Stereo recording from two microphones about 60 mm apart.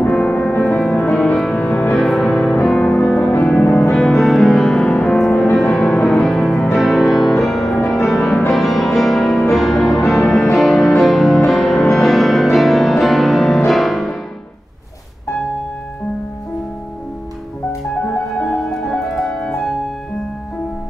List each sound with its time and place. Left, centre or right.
0.1 s music: centre
0.7 s music: centre; by 1.9 s left
2.0 s music: centre
2.8 s music: left
3.9 s music: centre
4.9 s music: centre
5.2 s music: centre
18.4 s music: centre
19.0 s music: centre